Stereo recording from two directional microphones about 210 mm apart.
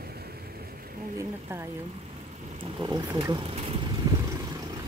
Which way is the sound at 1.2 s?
10° right (ahead or behind).